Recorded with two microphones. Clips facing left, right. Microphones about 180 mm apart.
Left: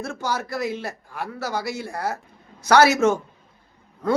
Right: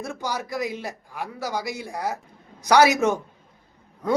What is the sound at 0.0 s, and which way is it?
A man's voice, 15° right (ahead or behind).